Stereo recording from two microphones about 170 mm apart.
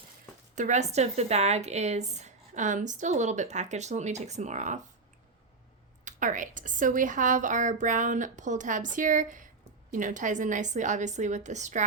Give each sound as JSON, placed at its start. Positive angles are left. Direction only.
{"t": 0.5, "sound": "a woman's voice", "side_deg": -45}
{"t": 6.1, "sound": "a woman's voice", "side_deg": -50}